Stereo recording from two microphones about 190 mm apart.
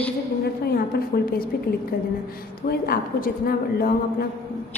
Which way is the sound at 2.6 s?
55° left (ahead or behind).